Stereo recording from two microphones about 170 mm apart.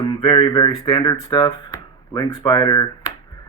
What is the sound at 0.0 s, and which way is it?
Speech, 30° left (ahead or behind).